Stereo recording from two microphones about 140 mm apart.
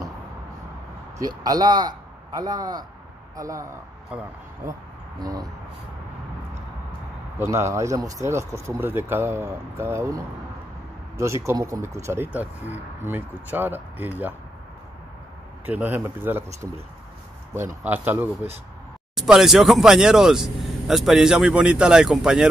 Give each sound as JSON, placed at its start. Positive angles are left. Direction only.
{"t": 1.1, "sound": "speech", "side_deg": -25}
{"t": 4.1, "sound": "speech", "side_deg": -10}
{"t": 5.2, "sound": "speech", "side_deg": -25}
{"t": 7.3, "sound": "speech", "side_deg": -20}
{"t": 15.6, "sound": "speech", "side_deg": -10}
{"t": 17.8, "sound": "speech", "side_deg": -15}
{"t": 19.1, "sound": "speech", "side_deg": -5}